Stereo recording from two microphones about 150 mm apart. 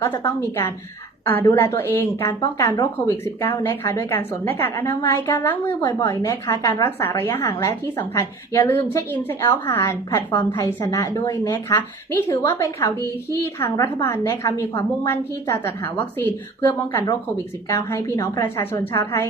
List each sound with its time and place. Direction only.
0.2 s a woman's voice: 20° left (ahead or behind)